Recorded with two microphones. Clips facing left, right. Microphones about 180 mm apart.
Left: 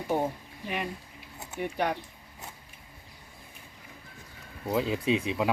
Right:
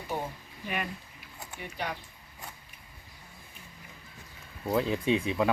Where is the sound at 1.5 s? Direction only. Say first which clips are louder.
Left 7 dB; 55° left (ahead or behind).